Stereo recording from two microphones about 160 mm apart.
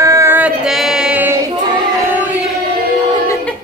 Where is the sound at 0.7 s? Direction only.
Centre (ahead or behind).